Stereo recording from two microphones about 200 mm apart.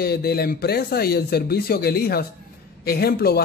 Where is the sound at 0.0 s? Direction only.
50° left (ahead or behind).